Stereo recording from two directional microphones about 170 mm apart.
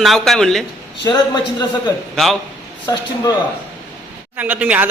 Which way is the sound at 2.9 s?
20° left (ahead or behind).